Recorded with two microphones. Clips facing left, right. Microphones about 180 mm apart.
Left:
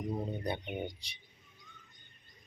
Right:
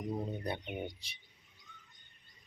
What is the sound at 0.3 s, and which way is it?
Speech, centre (ahead or behind).